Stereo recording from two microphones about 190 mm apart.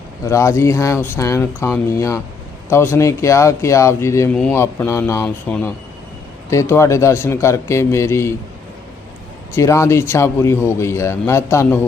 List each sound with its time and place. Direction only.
0.3 s speech: 15° left (ahead or behind)
9.6 s speech: 15° left (ahead or behind)